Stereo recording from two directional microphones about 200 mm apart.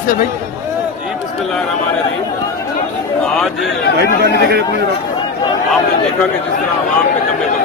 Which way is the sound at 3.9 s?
55° right (ahead or behind).